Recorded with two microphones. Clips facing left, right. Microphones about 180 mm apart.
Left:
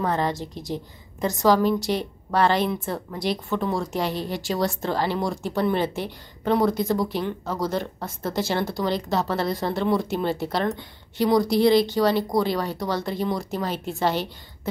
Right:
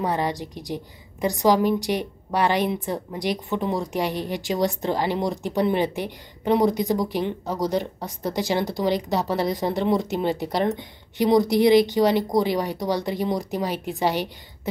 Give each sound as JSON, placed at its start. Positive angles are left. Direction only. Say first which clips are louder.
{"t": 0.0, "sound": "a woman's voice", "louder": "even", "side_deg": -15}